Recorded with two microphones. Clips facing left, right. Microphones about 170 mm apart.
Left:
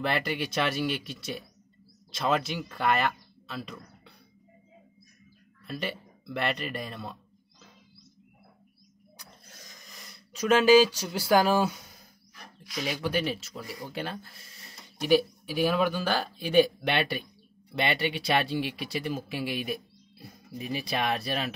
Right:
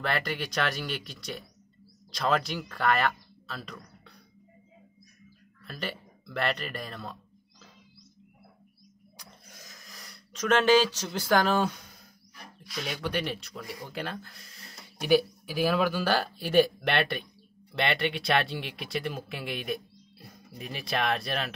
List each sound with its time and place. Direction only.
0.0 s speech: 5° left (ahead or behind)
5.7 s speech: 5° left (ahead or behind)
9.6 s speech: 5° right (ahead or behind)
15.5 s speech: centre (ahead or behind)